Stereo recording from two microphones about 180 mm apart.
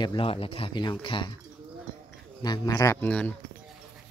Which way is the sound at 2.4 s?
20° left (ahead or behind).